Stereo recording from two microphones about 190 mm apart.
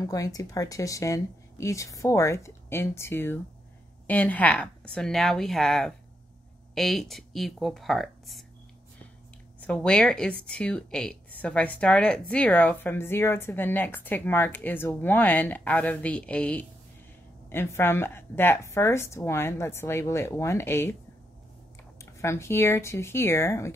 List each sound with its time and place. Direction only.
0.0 s a woman's voice: 20° left (ahead or behind); by 8.5 s centre (ahead or behind)
9.6 s a woman's voice: 5° left (ahead or behind)
21.9 s a woman's voice: 15° left (ahead or behind)